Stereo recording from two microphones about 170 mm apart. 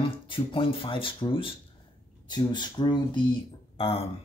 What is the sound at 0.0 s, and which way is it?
Speech, 30° left (ahead or behind).